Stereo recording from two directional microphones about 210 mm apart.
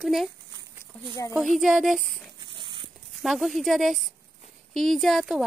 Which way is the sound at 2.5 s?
25° right (ahead or behind).